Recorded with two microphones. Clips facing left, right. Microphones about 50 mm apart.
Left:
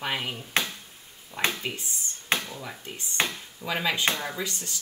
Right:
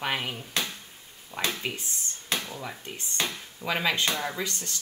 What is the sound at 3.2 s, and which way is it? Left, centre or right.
Speech, left.